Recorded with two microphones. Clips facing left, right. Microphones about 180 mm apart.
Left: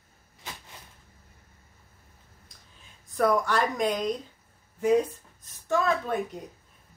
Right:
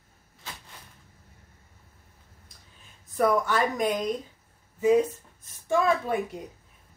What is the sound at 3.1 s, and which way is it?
A woman's voice, centre (ahead or behind).